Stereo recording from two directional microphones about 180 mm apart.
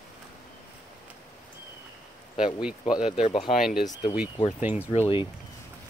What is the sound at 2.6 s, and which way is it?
Speech, 5° right (ahead or behind).